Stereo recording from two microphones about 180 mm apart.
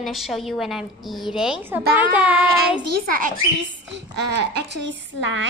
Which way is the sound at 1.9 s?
10° right (ahead or behind).